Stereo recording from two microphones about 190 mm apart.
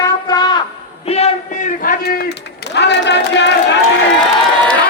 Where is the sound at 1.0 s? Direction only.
35° left (ahead or behind); by 3.8 s 65° left (ahead or behind).